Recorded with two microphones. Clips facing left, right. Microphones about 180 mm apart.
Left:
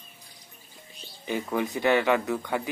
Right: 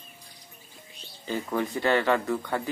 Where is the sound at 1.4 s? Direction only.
15° left (ahead or behind).